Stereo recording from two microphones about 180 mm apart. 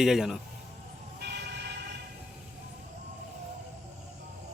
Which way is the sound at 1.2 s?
75° right (ahead or behind).